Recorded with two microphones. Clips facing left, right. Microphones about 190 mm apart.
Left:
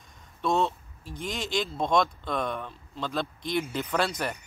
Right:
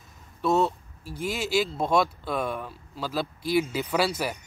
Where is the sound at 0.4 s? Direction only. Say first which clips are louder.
Right 3 dB; 5° right (ahead or behind).